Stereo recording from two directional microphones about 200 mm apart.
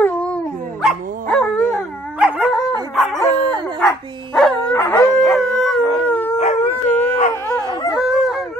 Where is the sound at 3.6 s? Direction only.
5° left (ahead or behind).